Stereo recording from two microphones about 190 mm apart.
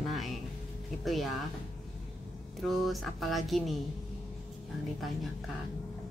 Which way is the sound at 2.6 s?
Centre (ahead or behind).